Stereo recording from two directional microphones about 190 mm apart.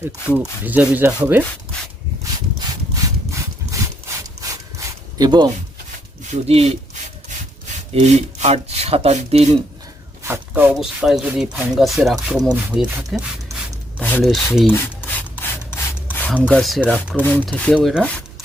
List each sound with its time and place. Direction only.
0.0 s rub: 10° right (ahead or behind)
2.9 s sawing: 15° right (ahead or behind)
4.4 s a sound: 15° right (ahead or behind)
6.3 s rub: 35° right (ahead or behind)
7.9 s speech: 35° right (ahead or behind)
10.2 s rub: 10° right (ahead or behind)
11.5 s speech: centre (ahead or behind)
14.0 s speech: 10° left (ahead or behind)
14.7 s rub: 10° left (ahead or behind)
16.1 s speech: 5° left (ahead or behind)
17.2 s speech: 10° left (ahead or behind)